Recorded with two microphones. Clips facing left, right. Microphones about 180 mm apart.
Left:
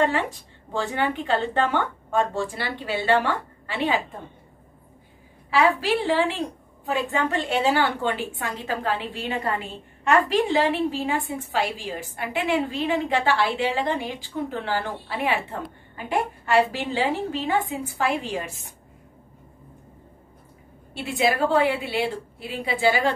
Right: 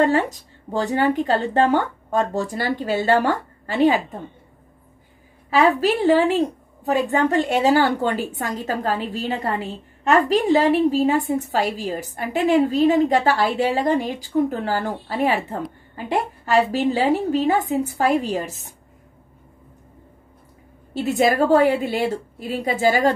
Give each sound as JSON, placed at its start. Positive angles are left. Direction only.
{"t": 0.0, "sound": "a woman's voice", "side_deg": -40}
{"t": 5.5, "sound": "a woman's voice", "side_deg": -40}
{"t": 10.9, "sound": "a woman's voice", "side_deg": -40}
{"t": 20.9, "sound": "a woman's voice", "side_deg": -45}